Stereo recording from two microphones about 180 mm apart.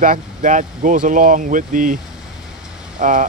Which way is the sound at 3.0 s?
45° right (ahead or behind).